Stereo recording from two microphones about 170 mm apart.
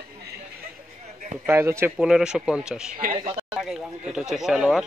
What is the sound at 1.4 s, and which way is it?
Speech, 15° right (ahead or behind).